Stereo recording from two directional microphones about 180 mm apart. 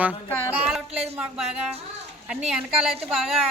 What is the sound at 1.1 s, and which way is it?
A woman's voice, 5° right (ahead or behind).